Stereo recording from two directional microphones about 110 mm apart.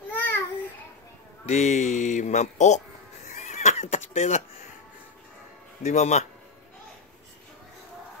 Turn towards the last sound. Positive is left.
turn(degrees=90)